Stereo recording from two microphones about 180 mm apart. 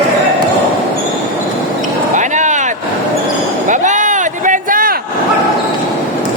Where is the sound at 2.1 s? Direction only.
40° right (ahead or behind).